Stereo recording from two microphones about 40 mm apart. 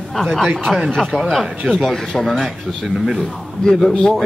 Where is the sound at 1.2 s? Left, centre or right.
Centre.